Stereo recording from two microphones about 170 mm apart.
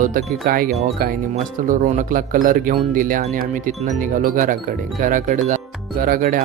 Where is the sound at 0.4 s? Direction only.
55° right (ahead or behind).